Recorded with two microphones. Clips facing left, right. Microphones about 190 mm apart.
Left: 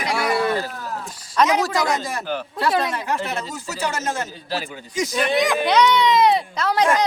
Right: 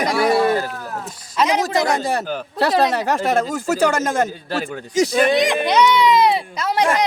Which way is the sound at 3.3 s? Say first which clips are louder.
Right 10 dB; 50° right (ahead or behind).